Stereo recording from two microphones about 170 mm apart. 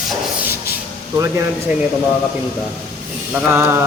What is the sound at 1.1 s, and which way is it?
Speech, 15° right (ahead or behind).